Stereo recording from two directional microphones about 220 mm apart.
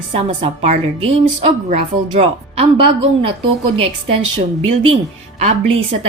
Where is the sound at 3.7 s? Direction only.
25° right (ahead or behind).